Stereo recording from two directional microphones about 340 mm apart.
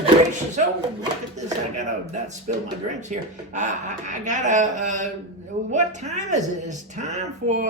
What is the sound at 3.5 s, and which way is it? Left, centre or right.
A man's voice, right.